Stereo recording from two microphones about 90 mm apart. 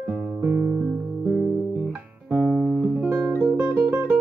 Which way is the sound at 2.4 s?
Centre (ahead or behind).